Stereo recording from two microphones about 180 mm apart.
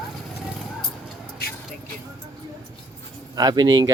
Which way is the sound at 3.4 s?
20° right (ahead or behind).